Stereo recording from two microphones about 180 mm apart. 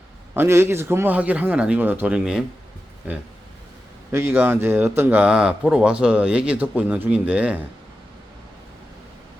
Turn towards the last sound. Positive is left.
turn(degrees=-5)  # may be behind; listen again after turning